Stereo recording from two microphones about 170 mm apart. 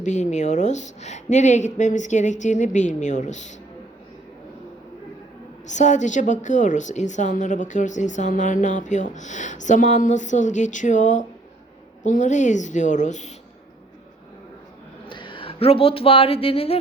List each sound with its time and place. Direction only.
0.0 s a woman's voice: 45° left (ahead or behind)
5.6 s a woman's voice: 45° left (ahead or behind)
15.0 s speech: 30° left (ahead or behind)